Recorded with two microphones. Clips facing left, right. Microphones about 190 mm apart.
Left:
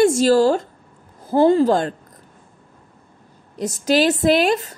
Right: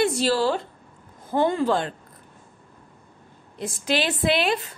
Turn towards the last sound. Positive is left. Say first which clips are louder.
# left 6 dB
turn(degrees=45)  # may be behind; listen again after turning